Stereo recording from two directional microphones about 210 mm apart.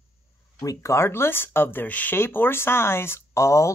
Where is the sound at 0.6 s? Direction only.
15° left (ahead or behind).